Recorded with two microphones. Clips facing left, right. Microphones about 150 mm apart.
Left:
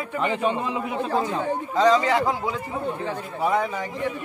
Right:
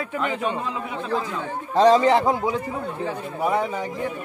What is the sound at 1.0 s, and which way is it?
Speech, 40° left (ahead or behind).